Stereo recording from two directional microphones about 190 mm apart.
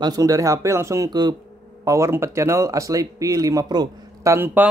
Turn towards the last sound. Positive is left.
turn(degrees=-10)  # may be behind; listen again after turning